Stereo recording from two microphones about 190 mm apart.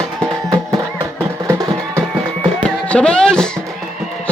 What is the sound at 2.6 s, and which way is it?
Music, 5° left (ahead or behind).